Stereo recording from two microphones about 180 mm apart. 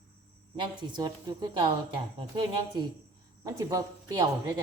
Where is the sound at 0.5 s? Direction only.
25° right (ahead or behind).